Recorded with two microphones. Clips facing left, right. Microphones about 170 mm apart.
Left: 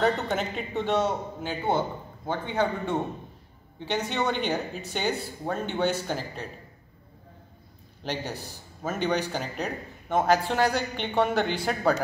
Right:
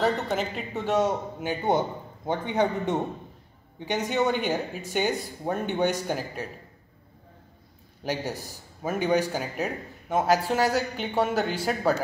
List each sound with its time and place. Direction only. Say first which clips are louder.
0.0 s a man's voice: even; centre (ahead or behind)
8.0 s speech: right 2 dB; 10° right (ahead or behind)